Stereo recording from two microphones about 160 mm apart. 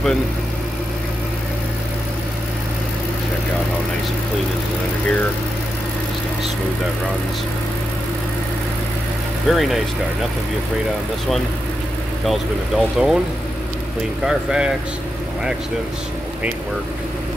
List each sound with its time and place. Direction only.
9.5 s speech: centre (ahead or behind)
12.3 s speech: centre (ahead or behind)
14.2 s speech: 5° right (ahead or behind)